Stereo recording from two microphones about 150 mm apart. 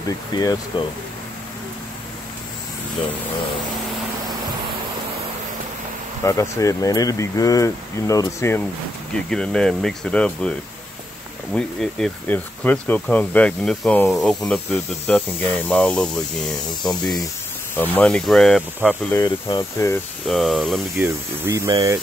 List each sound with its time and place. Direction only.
0.1 s speech: 25° left (ahead or behind)
6.2 s speech: 20° left (ahead or behind)
9.3 s speech: 5° left (ahead or behind)
11.5 s speech: 5° left (ahead or behind)
17.7 s speech: 10° left (ahead or behind)
18.8 s speech: 10° right (ahead or behind)
19.1 s speech: 30° left (ahead or behind)
20.2 s speech: centre (ahead or behind)
21.0 s speech: 15° right (ahead or behind)